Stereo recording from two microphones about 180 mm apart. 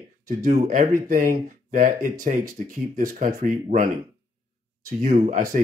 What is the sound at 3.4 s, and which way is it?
Speech, 50° right (ahead or behind).